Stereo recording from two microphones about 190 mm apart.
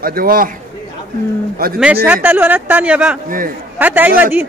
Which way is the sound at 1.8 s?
10° right (ahead or behind).